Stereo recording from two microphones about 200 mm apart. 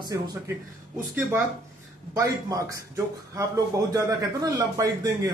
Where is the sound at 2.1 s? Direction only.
15° right (ahead or behind).